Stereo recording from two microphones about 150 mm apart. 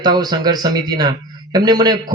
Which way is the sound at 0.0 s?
25° right (ahead or behind).